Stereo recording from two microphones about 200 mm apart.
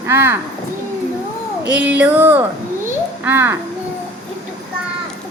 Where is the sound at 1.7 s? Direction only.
5° right (ahead or behind).